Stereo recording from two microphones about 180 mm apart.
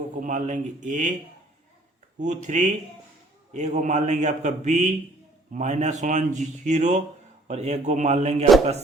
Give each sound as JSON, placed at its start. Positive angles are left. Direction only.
{"t": 0.2, "sound": "a man's voice", "side_deg": -45}
{"t": 2.1, "sound": "a man's voice", "side_deg": -45}